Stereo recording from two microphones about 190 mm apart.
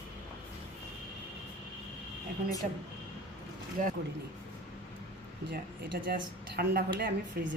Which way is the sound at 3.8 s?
45° right (ahead or behind).